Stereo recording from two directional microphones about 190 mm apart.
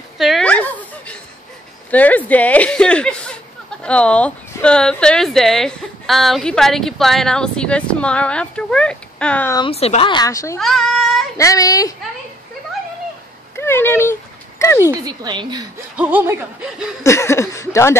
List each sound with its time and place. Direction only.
0.2 s a sound: centre (ahead or behind)
1.9 s speech: 10° left (ahead or behind)
9.6 s speech: 30° left (ahead or behind); by 10.6 s 15° left (ahead or behind)
10.6 s speech: centre (ahead or behind)
11.3 s speech: 15° left (ahead or behind)
13.6 s speech: 10° left (ahead or behind)
14.6 s a sound: 15° left (ahead or behind)
14.9 s speech: 20° right (ahead or behind)
16.0 s speech: 10° right (ahead or behind)
17.0 s speech: 15° left (ahead or behind)